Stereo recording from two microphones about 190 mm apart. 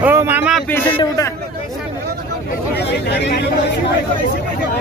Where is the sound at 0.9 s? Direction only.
25° left (ahead or behind).